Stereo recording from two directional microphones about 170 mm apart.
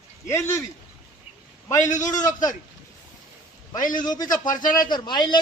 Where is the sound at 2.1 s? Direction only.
50° left (ahead or behind).